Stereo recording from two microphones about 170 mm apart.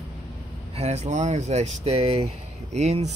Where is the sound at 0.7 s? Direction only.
40° right (ahead or behind).